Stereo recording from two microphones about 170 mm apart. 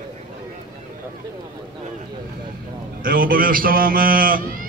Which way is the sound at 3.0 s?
55° right (ahead or behind).